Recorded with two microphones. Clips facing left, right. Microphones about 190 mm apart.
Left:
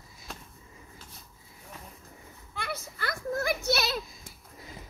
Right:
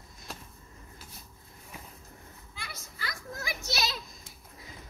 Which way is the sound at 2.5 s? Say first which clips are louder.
Left 11 dB; 60° left (ahead or behind).